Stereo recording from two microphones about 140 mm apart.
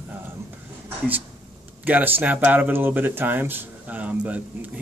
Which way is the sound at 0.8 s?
10° right (ahead or behind).